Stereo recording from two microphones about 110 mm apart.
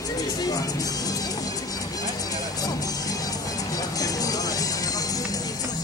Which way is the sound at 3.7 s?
35° left (ahead or behind).